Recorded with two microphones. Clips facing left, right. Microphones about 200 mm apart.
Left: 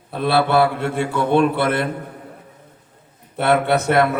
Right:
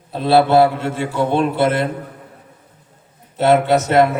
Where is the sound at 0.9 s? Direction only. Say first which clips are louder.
Even; 60° left (ahead or behind).